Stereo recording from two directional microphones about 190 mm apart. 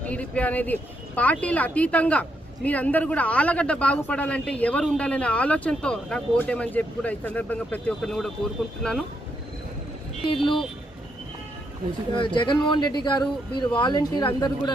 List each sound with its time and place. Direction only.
0.0 s a woman's voice: 5° left (ahead or behind)
10.2 s speech: 25° left (ahead or behind)
12.1 s speech: 25° left (ahead or behind)